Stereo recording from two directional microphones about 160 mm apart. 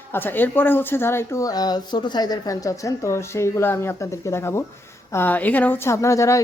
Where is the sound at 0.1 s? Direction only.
10° left (ahead or behind).